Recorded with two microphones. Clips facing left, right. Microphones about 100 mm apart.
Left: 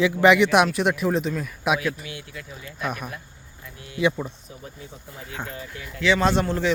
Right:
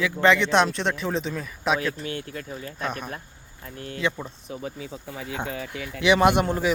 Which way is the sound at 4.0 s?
15° left (ahead or behind).